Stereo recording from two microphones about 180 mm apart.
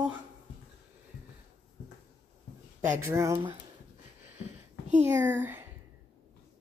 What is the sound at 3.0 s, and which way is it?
Speech, 15° right (ahead or behind).